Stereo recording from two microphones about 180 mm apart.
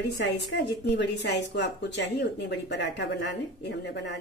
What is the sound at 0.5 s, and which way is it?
Speech, 75° left (ahead or behind).